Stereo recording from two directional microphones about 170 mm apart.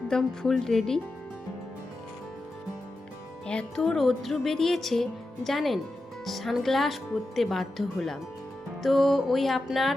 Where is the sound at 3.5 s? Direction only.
5° left (ahead or behind).